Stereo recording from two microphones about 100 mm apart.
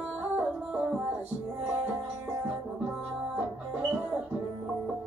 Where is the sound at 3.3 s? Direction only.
15° right (ahead or behind).